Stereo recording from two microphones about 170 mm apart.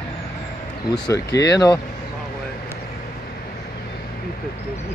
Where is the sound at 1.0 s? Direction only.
20° left (ahead or behind).